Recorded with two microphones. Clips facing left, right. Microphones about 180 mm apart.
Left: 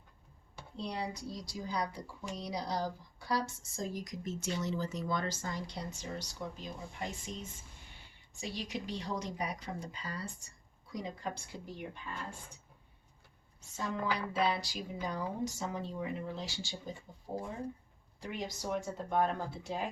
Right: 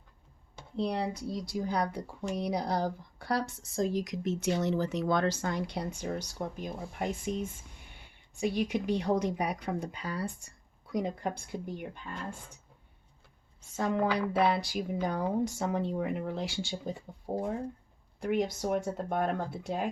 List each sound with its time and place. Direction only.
0.8 s a woman's voice: 60° right (ahead or behind)
13.7 s a woman's voice: 60° right (ahead or behind)